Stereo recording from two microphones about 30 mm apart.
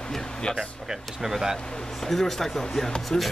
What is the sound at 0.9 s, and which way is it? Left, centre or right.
Speech, centre.